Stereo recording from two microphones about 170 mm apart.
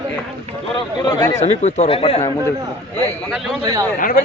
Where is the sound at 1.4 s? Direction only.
40° left (ahead or behind).